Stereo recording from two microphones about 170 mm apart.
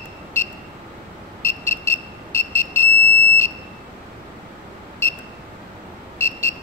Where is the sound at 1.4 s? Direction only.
15° left (ahead or behind).